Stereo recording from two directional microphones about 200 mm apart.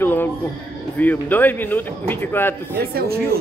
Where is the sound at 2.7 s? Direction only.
50° right (ahead or behind).